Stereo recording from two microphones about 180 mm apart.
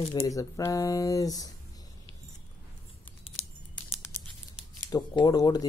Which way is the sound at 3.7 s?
15° left (ahead or behind).